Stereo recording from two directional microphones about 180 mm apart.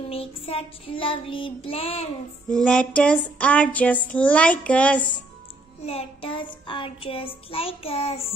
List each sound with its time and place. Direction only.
0.1 s child singing: 30° left (ahead or behind)
2.5 s a sound: 5° left (ahead or behind)
5.9 s child singing: 30° left (ahead or behind)